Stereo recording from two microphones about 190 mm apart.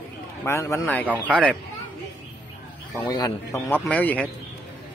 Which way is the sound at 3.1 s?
20° left (ahead or behind).